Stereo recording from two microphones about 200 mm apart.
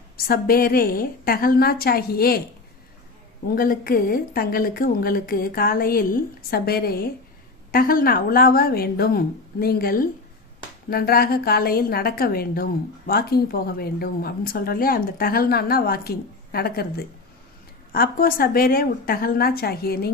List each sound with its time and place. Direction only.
0.3 s a woman's voice: 45° left (ahead or behind)
3.5 s a woman's voice: 45° left (ahead or behind)
17.9 s a woman's voice: 45° left (ahead or behind)